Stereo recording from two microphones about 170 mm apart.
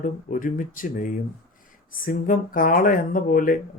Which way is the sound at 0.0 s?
50° left (ahead or behind).